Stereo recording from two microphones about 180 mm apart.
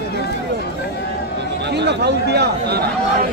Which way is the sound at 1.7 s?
70° right (ahead or behind).